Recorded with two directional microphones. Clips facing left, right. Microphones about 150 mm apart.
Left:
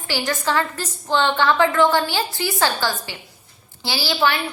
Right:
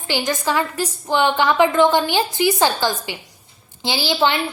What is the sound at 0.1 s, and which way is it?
A woman's voice, 15° right (ahead or behind).